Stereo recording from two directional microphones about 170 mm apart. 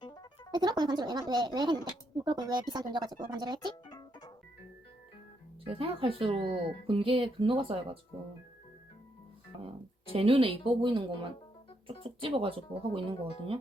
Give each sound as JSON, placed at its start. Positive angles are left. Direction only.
{"t": 0.0, "sound": "music", "side_deg": 25}
{"t": 0.5, "sound": "speech", "side_deg": -25}
{"t": 3.7, "sound": "music", "side_deg": 25}
{"t": 5.6, "sound": "speech", "side_deg": -35}
{"t": 10.1, "sound": "speech", "side_deg": -35}